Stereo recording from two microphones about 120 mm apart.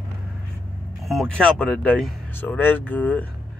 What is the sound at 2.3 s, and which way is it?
Speech, 15° left (ahead or behind).